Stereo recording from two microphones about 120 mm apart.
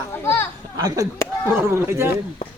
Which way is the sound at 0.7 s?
30° right (ahead or behind).